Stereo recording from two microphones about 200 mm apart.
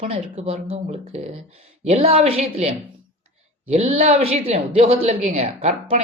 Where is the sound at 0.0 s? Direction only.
35° right (ahead or behind).